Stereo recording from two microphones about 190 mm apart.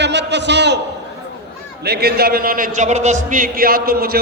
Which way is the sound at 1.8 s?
55° right (ahead or behind).